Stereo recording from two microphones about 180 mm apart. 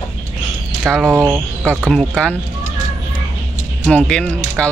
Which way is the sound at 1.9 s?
5° left (ahead or behind).